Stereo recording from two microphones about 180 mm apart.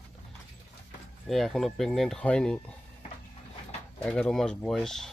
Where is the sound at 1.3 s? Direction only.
Centre (ahead or behind).